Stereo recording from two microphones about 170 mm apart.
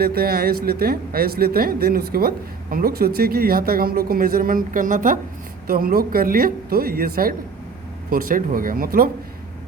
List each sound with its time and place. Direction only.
0.0 s speech: 65° right (ahead or behind)